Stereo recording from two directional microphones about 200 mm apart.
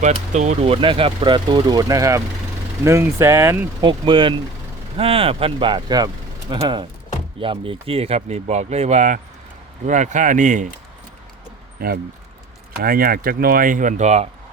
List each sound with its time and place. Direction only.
0.0 s speech: 35° right (ahead or behind); by 3.8 s 15° right (ahead or behind)
3.8 s speech: 25° right (ahead or behind); by 10.7 s 40° right (ahead or behind)
12.8 s speech: 45° right (ahead or behind)